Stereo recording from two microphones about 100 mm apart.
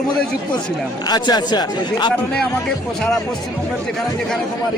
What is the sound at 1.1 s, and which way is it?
Speech, 45° left (ahead or behind).